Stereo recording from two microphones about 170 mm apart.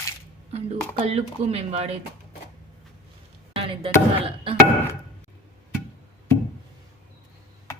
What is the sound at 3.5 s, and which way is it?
Basketball bounce, 35° right (ahead or behind).